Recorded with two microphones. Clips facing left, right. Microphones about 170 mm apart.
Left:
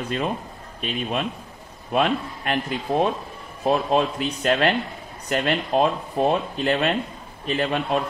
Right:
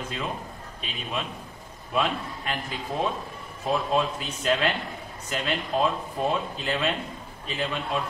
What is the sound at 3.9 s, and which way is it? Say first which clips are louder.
Speech: left 4 dB; 60° left (ahead or behind).